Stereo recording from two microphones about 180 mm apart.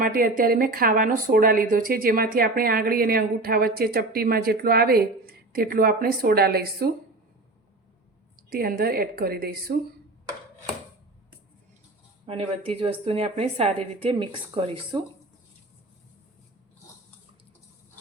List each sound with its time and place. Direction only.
0.0 s a woman's voice: 50° right (ahead or behind)
8.4 s a woman's voice: 55° right (ahead or behind)
12.2 s a woman's voice: 30° right (ahead or behind)